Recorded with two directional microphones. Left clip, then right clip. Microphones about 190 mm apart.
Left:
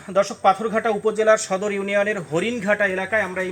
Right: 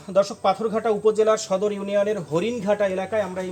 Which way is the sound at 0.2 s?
35° right (ahead or behind).